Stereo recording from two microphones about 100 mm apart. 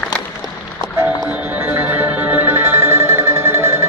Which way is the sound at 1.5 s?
20° right (ahead or behind).